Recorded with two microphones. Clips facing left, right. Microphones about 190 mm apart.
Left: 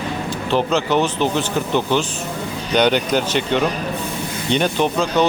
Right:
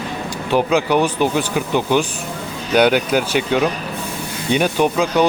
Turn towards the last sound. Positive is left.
turn(degrees=-10)  # may be behind; listen again after turning